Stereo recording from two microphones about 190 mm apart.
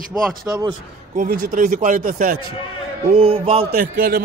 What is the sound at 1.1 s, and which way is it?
A man's voice, 45° right (ahead or behind).